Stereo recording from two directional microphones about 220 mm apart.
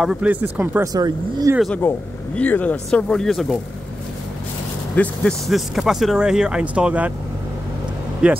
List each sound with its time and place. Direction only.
0.0 s speech: 5° right (ahead or behind)
1.6 s speech: 5° left (ahead or behind)
4.9 s speech: 5° left (ahead or behind)
8.2 s speech: 5° right (ahead or behind)